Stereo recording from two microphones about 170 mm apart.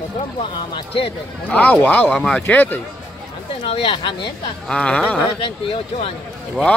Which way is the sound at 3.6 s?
35° left (ahead or behind).